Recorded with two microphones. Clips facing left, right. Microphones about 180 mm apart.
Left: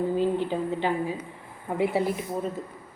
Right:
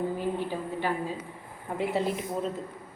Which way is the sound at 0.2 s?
20° left (ahead or behind).